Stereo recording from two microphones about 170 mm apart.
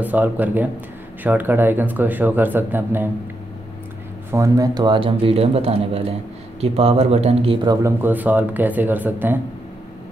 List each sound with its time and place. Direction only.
0.0 s speech: 10° right (ahead or behind)
4.3 s speech: 20° right (ahead or behind); by 7.5 s 40° right (ahead or behind)
7.6 s speech: 20° right (ahead or behind)